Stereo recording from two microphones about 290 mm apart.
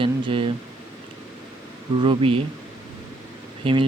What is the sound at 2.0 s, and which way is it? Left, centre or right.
Speech, centre.